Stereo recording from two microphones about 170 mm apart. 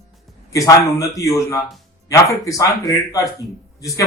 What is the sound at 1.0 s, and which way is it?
Speech, 20° left (ahead or behind).